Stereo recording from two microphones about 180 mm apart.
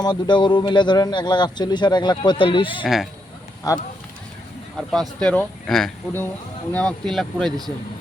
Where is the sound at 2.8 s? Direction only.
Centre (ahead or behind).